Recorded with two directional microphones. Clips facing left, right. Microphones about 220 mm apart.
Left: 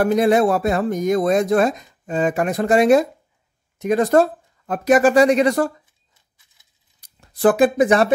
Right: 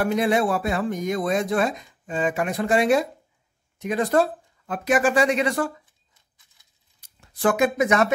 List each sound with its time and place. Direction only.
0.0 s speech: 40° left (ahead or behind)
7.0 s speech: 35° left (ahead or behind)